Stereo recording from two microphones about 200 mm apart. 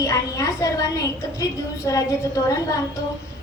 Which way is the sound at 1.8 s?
15° left (ahead or behind).